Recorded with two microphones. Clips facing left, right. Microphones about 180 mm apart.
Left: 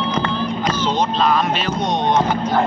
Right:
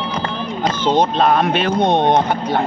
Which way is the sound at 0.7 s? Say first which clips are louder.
Right 6 dB; 55° right (ahead or behind).